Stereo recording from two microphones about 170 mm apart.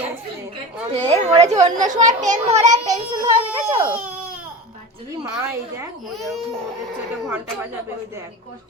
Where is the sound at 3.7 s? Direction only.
10° right (ahead or behind).